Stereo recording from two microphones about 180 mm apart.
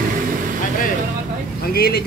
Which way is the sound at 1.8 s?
60° left (ahead or behind).